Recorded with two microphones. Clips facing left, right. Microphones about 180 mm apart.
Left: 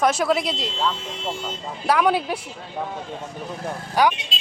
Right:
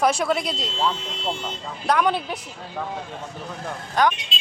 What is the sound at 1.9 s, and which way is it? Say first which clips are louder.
Speech: left 2 dB; 5° left (ahead or behind).